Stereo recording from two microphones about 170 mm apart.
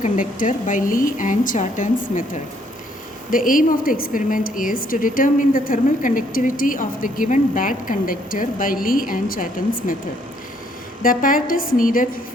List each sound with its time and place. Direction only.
0.0 s a woman's voice: 50° left (ahead or behind)
3.3 s a woman's voice: 55° left (ahead or behind)
11.0 s speech: 55° left (ahead or behind)